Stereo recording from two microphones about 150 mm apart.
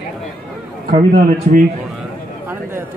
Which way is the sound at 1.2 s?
65° right (ahead or behind).